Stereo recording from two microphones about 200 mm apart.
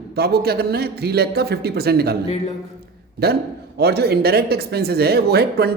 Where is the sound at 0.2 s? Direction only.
50° right (ahead or behind).